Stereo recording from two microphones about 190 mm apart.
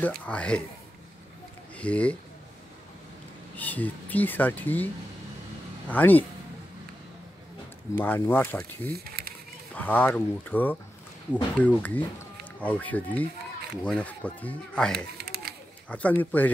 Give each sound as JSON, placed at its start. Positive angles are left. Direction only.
{"t": 0.0, "sound": "speech", "side_deg": 5}
{"t": 1.8, "sound": "speech", "side_deg": 5}
{"t": 3.5, "sound": "speech", "side_deg": 10}
{"t": 5.9, "sound": "speech", "side_deg": 10}
{"t": 8.0, "sound": "speech", "side_deg": 10}
{"t": 8.9, "sound": "a sound", "side_deg": -55}
{"t": 9.8, "sound": "speech", "side_deg": 10}
{"t": 15.1, "sound": "a sound", "side_deg": -55}
{"t": 15.9, "sound": "speech", "side_deg": 10}